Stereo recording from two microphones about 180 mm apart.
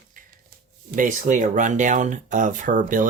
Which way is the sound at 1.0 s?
45° right (ahead or behind).